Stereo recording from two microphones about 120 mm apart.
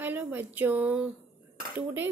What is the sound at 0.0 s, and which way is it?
A woman's voice, 15° right (ahead or behind).